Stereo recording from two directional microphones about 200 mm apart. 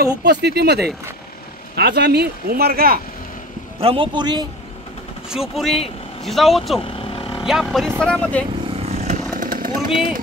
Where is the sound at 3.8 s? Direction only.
25° right (ahead or behind).